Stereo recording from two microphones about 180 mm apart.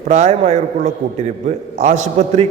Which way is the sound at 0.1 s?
35° right (ahead or behind).